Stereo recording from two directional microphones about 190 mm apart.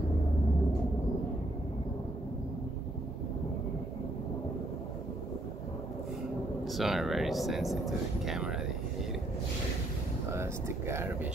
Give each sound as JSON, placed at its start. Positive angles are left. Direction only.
{"t": 6.7, "sound": "speech", "side_deg": 0}
{"t": 10.3, "sound": "speech", "side_deg": -15}